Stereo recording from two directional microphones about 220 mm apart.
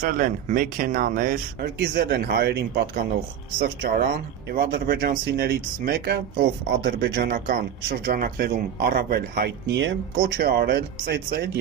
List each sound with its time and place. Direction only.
0.0 s speech: 35° right (ahead or behind)